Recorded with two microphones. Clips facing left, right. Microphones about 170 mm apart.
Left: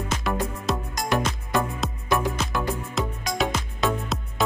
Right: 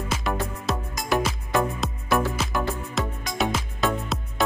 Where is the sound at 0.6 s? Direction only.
Centre (ahead or behind).